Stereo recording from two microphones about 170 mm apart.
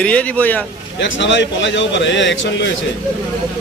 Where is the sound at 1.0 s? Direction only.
90° left.